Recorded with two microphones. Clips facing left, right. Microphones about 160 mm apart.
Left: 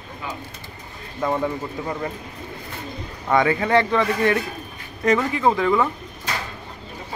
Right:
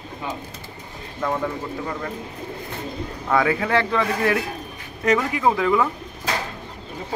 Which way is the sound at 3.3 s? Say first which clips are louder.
Left 2 dB; centre (ahead or behind).